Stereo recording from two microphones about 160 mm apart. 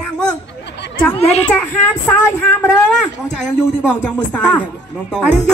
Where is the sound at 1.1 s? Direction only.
40° left (ahead or behind).